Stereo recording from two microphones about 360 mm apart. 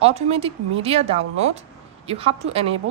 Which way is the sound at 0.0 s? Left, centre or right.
Centre.